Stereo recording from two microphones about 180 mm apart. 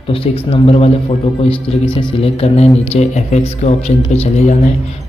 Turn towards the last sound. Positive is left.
turn(degrees=35)  # may be behind; listen again after turning